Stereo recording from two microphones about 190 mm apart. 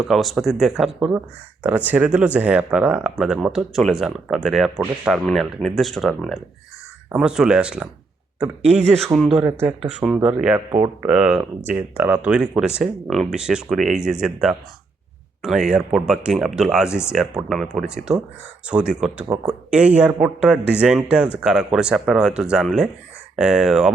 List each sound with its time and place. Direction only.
0.0 s speech: centre (ahead or behind)
8.6 s speech: 35° right (ahead or behind)
9.1 s speech: centre (ahead or behind)
9.4 s speech: 15° right (ahead or behind)